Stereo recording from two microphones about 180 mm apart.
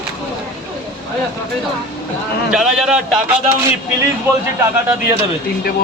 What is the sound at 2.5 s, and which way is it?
Speech, centre (ahead or behind).